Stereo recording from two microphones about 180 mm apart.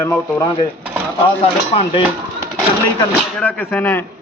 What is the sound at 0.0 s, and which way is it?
Speech, 15° left (ahead or behind).